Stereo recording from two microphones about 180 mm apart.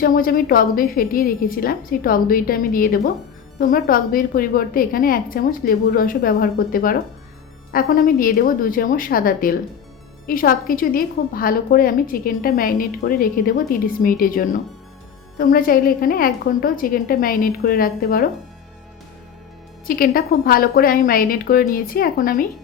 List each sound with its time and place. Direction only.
0.0 s a woman's voice: 55° left (ahead or behind)
19.9 s a woman's voice: 55° left (ahead or behind)